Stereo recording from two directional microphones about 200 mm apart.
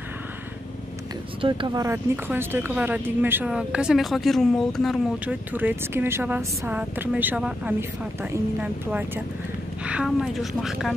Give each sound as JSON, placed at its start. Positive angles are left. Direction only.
{"t": 1.4, "sound": "speech", "side_deg": -20}